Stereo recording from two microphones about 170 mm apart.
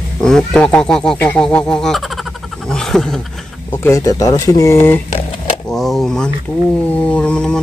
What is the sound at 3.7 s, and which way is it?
Speech, 15° left (ahead or behind).